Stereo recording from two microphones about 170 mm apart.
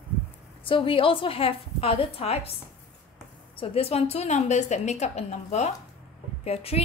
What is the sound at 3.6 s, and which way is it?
A woman's voice, 35° left (ahead or behind).